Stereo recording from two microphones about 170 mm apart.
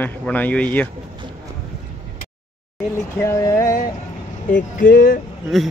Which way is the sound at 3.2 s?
15° left (ahead or behind).